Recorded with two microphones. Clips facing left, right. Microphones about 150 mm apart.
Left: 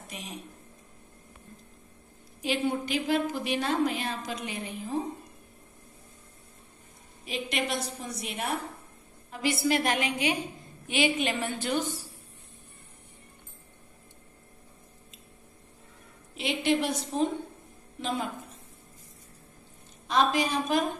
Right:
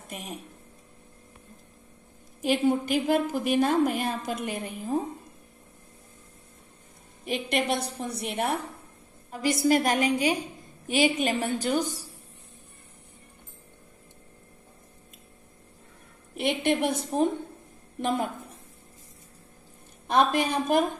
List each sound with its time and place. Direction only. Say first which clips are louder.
0.1 s a woman's voice: right 4 dB; 50° right (ahead or behind)
2.4 s a woman's voice: right 5 dB; 45° right (ahead or behind)
7.2 s a woman's voice: right 5 dB; 60° right (ahead or behind)
9.3 s a woman's voice: right 4 dB; 40° right (ahead or behind)
16.3 s a woman's voice: right 2 dB; 55° right (ahead or behind)
20.1 s a woman's voice: right 2 dB; 55° right (ahead or behind)